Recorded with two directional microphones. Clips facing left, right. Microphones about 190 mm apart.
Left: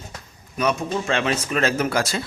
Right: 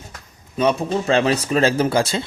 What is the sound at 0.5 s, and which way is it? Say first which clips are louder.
Speech: right 4 dB; 30° right (ahead or behind).